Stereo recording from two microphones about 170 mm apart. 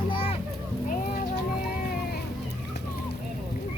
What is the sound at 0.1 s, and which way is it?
Children playing, 30° left (ahead or behind).